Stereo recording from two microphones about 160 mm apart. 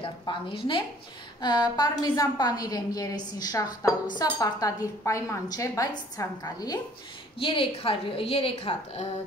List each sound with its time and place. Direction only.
0.0 s a woman's voice: 30° left (ahead or behind)
7.3 s a woman's voice: 35° left (ahead or behind)